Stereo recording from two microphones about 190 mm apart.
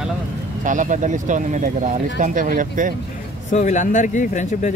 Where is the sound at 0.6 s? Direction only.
40° right (ahead or behind).